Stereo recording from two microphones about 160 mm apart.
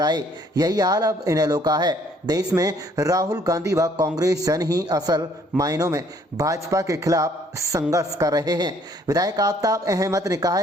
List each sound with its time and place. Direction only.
0.0 s speech: 25° right (ahead or behind)